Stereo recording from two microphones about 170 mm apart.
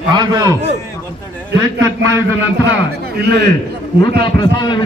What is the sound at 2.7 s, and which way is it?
Speech, 75° right (ahead or behind).